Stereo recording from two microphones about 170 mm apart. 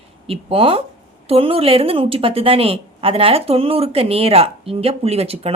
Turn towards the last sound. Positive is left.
turn(degrees=-35)  # may be behind; listen again after turning